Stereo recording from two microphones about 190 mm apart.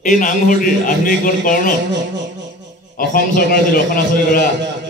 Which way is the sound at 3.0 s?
50° left (ahead or behind).